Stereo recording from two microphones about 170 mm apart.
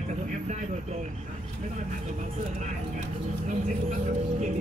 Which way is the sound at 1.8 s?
45° right (ahead or behind).